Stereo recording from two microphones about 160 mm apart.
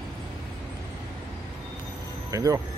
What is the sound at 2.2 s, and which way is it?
Speech, 20° right (ahead or behind).